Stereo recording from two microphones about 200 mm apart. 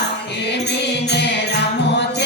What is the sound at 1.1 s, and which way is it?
Music, 60° left (ahead or behind).